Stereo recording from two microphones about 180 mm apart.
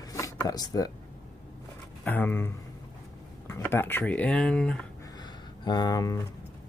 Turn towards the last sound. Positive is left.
turn(degrees=20)  # may be behind; listen again after turning